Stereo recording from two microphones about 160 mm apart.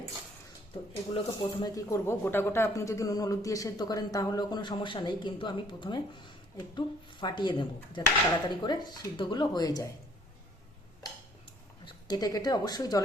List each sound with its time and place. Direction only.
1.1 s speech: 30° left (ahead or behind)
11.9 s a woman's voice: 25° left (ahead or behind)